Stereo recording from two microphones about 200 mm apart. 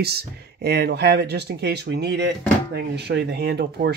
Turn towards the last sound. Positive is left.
turn(degrees=-55)  # may be behind; listen again after turning